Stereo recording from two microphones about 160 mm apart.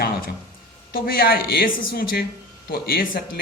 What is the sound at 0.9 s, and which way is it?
A man's voice, 70° left (ahead or behind).